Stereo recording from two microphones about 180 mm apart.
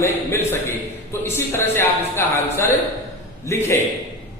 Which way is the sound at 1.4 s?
15° left (ahead or behind).